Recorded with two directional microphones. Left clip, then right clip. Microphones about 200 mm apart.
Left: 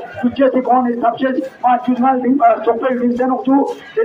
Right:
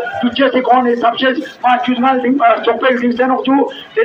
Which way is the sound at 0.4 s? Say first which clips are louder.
Right 2 dB; 35° left (ahead or behind).